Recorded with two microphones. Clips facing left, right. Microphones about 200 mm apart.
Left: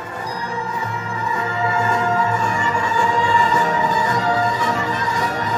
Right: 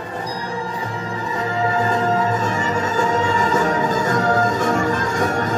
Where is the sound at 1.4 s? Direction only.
35° right (ahead or behind).